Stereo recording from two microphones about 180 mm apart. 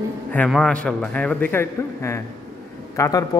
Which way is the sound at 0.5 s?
5° left (ahead or behind).